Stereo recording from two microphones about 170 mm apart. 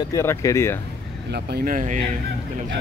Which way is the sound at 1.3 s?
60° right (ahead or behind).